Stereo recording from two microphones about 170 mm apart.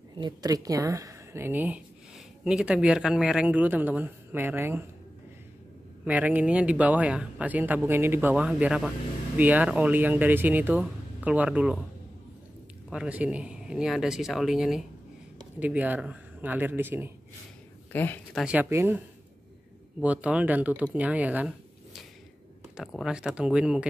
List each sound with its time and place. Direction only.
0.2 s a woman's voice: 20° right (ahead or behind)
6.0 s speech: 10° right (ahead or behind)
12.9 s speech: 5° right (ahead or behind)
17.9 s speech: 10° left (ahead or behind)
18.4 s speech: 10° right (ahead or behind)